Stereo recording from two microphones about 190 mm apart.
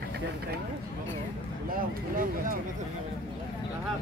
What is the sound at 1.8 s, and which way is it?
Speech, 50° right (ahead or behind).